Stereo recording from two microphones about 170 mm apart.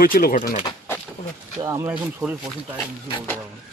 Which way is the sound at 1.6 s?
20° right (ahead or behind).